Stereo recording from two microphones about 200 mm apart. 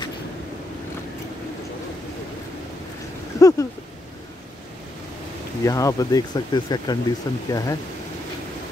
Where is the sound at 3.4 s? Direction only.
15° left (ahead or behind).